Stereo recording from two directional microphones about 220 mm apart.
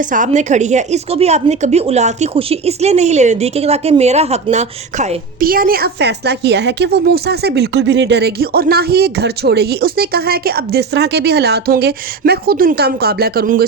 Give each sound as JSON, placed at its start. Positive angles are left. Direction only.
{"t": 0.0, "sound": "a woman's voice", "side_deg": -35}